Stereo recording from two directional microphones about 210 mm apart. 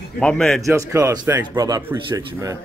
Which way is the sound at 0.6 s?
15° right (ahead or behind).